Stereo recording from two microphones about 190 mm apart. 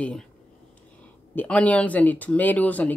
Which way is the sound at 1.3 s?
10° left (ahead or behind).